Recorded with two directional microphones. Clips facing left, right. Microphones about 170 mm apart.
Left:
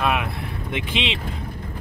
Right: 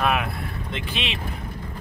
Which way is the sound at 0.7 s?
20° left (ahead or behind).